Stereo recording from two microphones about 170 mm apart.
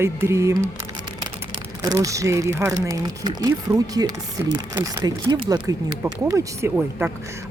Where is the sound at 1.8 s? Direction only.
20° right (ahead or behind).